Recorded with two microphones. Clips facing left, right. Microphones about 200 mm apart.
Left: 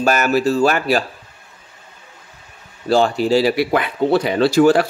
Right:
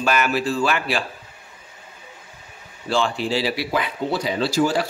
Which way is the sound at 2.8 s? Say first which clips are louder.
Left 7 dB; 40° left (ahead or behind).